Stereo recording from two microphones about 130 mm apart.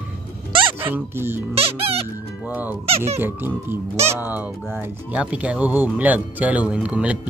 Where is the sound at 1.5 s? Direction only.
45° right (ahead or behind).